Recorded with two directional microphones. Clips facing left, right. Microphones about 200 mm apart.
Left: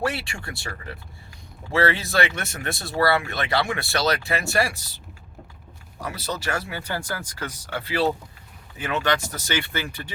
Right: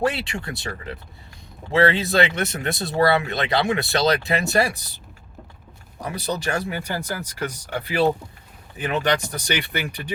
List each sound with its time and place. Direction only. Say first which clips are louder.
0.0 s speech: right 4 dB; 20° right (ahead or behind)
6.0 s speech: right 3 dB; 20° right (ahead or behind)